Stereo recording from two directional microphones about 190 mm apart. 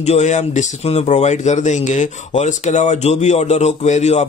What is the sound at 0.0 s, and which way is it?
Speech, 35° left (ahead or behind).